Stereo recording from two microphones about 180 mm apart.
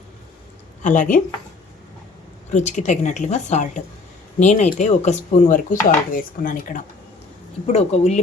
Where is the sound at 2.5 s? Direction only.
40° left (ahead or behind).